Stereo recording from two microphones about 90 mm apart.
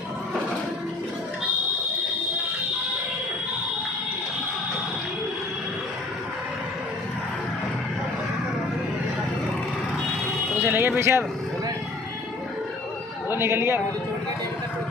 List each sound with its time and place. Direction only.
10.6 s speech: 25° right (ahead or behind)
13.3 s a man's voice: 30° right (ahead or behind)